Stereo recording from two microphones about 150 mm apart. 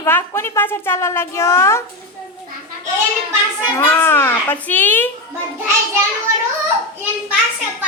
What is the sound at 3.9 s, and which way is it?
A woman's voice, 15° left (ahead or behind).